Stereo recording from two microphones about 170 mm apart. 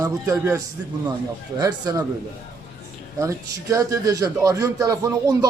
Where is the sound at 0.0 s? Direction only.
15° right (ahead or behind).